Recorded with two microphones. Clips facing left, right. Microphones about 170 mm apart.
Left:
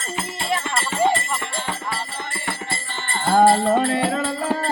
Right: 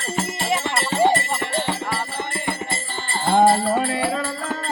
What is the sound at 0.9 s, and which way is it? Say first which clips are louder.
Music: right 2 dB; 35° right (ahead or behind).